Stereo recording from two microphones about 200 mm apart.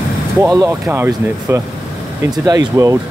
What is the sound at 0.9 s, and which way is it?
Speech, 10° right (ahead or behind).